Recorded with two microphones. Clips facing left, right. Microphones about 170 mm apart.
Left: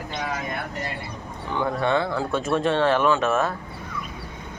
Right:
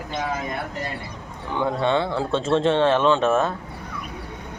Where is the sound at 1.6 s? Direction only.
20° right (ahead or behind).